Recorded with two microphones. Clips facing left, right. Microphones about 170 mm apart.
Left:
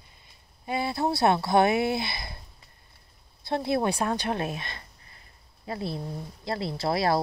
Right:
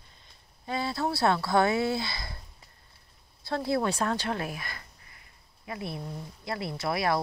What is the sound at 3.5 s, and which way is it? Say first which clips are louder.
Speech: left 2 dB; 20° left (ahead or behind).